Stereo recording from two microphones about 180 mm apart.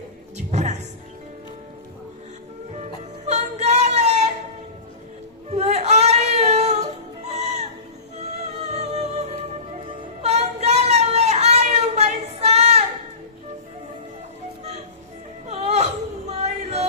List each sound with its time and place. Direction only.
0.3 s music: 40° right (ahead or behind)
2.7 s music: 40° right (ahead or behind)
5.5 s female singing: 35° right (ahead or behind)
7.3 s music: 40° right (ahead or behind)
8.7 s music: 35° right (ahead or behind)
10.2 s a sound: 35° right (ahead or behind)
15.4 s a sound: 35° right (ahead or behind)